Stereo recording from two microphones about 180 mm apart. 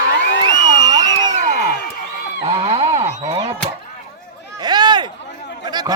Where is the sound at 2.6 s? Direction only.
35° right (ahead or behind).